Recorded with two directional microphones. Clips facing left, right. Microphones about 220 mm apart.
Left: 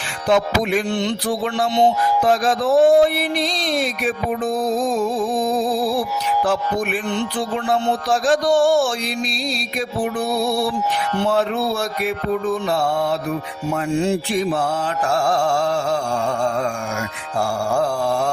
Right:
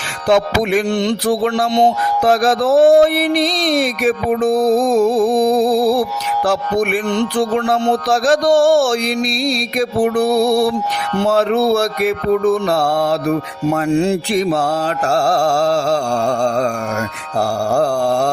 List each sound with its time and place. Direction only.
0.3 s music: 80° right
13.3 s speech: 60° right (ahead or behind); by 14.4 s 90° right
15.1 s music: 35° right (ahead or behind)
18.0 s a sound: 40° right (ahead or behind)